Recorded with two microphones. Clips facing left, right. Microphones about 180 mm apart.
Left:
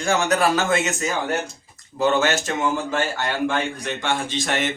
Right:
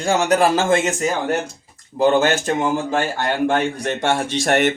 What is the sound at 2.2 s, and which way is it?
Speech, 35° right (ahead or behind).